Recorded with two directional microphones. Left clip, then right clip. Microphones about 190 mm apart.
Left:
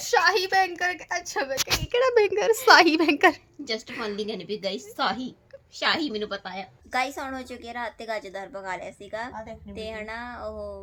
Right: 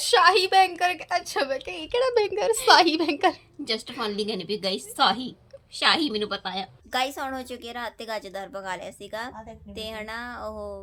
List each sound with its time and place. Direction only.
0.1 s a woman's voice: 5° right (ahead or behind)
1.9 s a woman's voice: 15° left (ahead or behind)
3.7 s a woman's voice: 10° right (ahead or behind)